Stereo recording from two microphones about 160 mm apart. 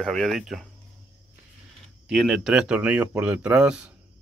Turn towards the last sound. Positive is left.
turn(degrees=-5)  # may be behind; listen again after turning